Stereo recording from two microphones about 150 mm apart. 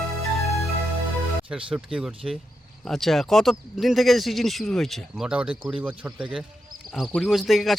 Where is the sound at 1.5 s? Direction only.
10° right (ahead or behind).